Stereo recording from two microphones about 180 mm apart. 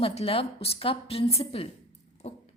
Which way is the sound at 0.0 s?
35° left (ahead or behind).